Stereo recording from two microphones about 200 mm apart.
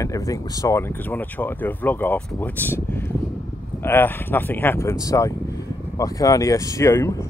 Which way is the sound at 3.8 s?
10° left (ahead or behind).